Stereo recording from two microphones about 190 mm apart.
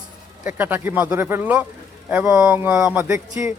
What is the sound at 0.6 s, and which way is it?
A man's voice, 10° right (ahead or behind).